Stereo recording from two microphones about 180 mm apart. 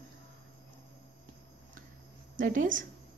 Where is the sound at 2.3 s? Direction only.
45° right (ahead or behind).